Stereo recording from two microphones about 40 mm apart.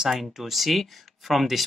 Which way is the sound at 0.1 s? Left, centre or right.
Centre.